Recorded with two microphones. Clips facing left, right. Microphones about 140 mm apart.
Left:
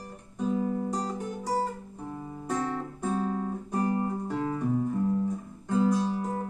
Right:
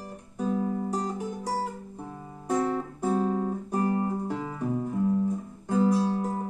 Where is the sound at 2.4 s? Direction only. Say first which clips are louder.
Right 5 dB; 5° right (ahead or behind).